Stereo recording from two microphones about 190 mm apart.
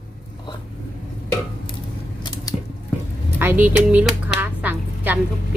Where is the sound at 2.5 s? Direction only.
20° left (ahead or behind).